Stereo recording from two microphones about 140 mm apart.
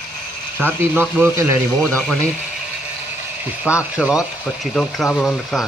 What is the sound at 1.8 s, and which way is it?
Speech, 5° left (ahead or behind).